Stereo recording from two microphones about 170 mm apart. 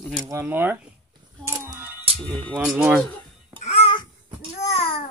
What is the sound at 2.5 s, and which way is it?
Speech, 5° right (ahead or behind).